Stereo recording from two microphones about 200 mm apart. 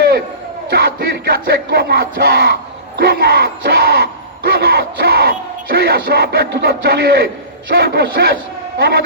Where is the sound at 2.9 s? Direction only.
50° right (ahead or behind).